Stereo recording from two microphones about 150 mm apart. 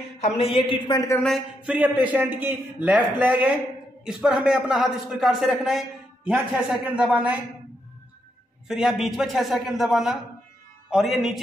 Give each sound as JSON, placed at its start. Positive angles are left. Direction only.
{"t": 0.2, "sound": "speech", "side_deg": 40}
{"t": 1.7, "sound": "a man's voice", "side_deg": -10}
{"t": 8.6, "sound": "a man's voice", "side_deg": -5}